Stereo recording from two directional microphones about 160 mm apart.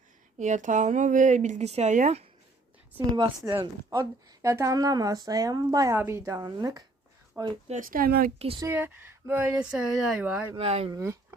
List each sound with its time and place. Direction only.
0.3 s speech: 50° right (ahead or behind)
3.4 s speech: 20° right (ahead or behind)
7.7 s speech: 60° right (ahead or behind)
8.4 s speech: 35° right (ahead or behind)
8.6 s speech: 10° right (ahead or behind)
10.5 s speech: 40° right (ahead or behind)
10.9 s speech: 20° right (ahead or behind)